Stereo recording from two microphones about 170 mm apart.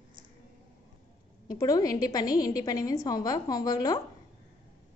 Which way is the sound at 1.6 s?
20° left (ahead or behind).